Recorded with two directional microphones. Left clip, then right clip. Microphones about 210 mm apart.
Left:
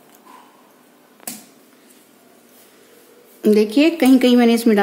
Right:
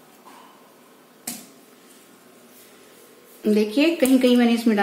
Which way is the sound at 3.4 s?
45° left (ahead or behind).